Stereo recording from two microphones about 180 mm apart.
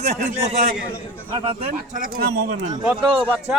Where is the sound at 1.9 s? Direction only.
50° right (ahead or behind).